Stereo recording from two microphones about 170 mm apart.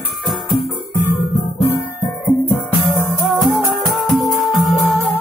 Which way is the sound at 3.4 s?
Centre (ahead or behind).